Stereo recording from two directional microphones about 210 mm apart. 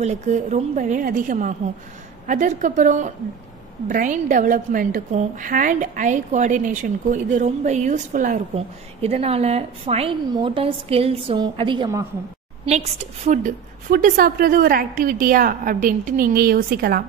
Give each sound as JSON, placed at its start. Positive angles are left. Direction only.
{"t": 0.0, "sound": "a woman's voice", "side_deg": -30}
{"t": 12.6, "sound": "a woman's voice", "side_deg": -30}